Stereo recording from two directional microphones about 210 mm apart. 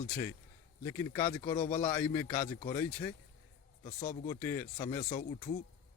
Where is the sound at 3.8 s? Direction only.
35° left (ahead or behind).